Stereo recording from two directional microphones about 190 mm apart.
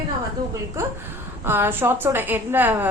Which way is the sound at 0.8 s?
15° right (ahead or behind).